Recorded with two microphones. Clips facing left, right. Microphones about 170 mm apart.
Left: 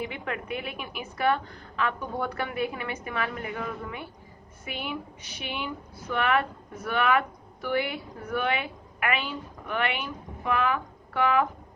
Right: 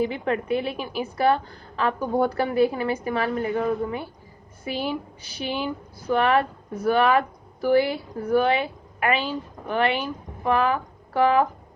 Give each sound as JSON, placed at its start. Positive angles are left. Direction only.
{"t": 0.0, "sound": "a woman's voice", "side_deg": -35}